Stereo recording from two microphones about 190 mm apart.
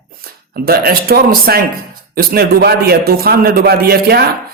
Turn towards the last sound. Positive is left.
turn(degrees=-55)  # may be behind; listen again after turning